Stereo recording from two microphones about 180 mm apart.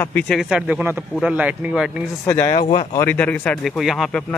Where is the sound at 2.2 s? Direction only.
15° left (ahead or behind); by 4.1 s centre (ahead or behind).